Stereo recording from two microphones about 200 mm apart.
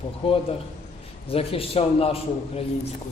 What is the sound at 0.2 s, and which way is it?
A man's voice, 30° left (ahead or behind).